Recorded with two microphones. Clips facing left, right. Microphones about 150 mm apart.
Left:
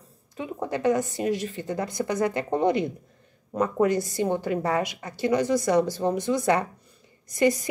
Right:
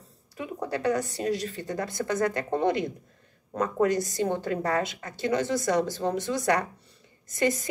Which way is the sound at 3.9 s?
15° right (ahead or behind).